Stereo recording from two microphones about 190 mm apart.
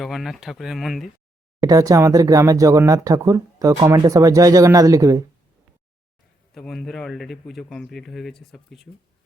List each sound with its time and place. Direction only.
0.0 s speech: centre (ahead or behind)
1.6 s speech: 20° right (ahead or behind)
6.5 s speech: centre (ahead or behind)